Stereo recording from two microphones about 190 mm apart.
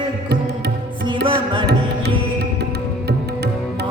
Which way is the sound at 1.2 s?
60° right (ahead or behind).